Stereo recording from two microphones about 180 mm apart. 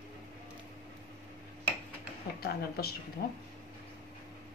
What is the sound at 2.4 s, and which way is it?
Speech, 60° left (ahead or behind).